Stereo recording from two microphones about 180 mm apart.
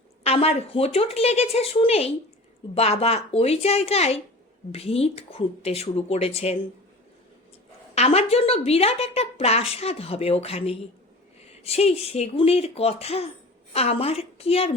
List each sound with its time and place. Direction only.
0.2 s a woman's voice: 35° left (ahead or behind)
7.9 s a woman's voice: 35° left (ahead or behind)